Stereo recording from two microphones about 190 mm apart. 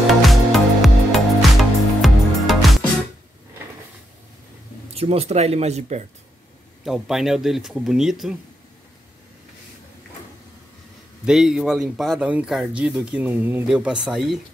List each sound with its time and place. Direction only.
0.0 s music: centre (ahead or behind)
4.9 s speech: 30° right (ahead or behind)
6.8 s speech: centre (ahead or behind)
11.2 s speech: 5° right (ahead or behind)